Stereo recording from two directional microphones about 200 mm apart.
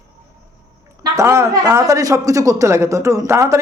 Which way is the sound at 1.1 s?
15° right (ahead or behind).